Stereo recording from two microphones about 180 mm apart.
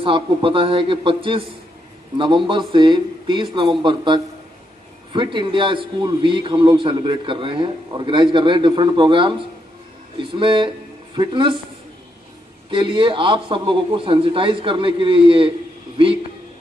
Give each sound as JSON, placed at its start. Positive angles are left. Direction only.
{"t": 0.0, "sound": "a man's voice", "side_deg": -30}
{"t": 12.7, "sound": "a man's voice", "side_deg": -30}